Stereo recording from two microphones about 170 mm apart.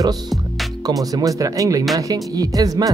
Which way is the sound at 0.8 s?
20° right (ahead or behind).